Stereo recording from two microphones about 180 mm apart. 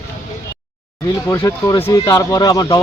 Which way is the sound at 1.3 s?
15° left (ahead or behind).